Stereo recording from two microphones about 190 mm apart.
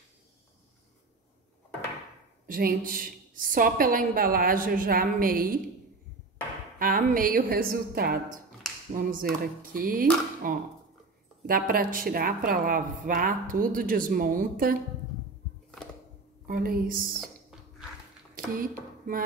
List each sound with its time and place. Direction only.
2.4 s a woman's voice: 50° right (ahead or behind)
6.8 s a woman's voice: 50° right (ahead or behind)
16.4 s a woman's voice: 50° right (ahead or behind)
17.1 s music: centre (ahead or behind)
18.3 s a sound: 50° right (ahead or behind)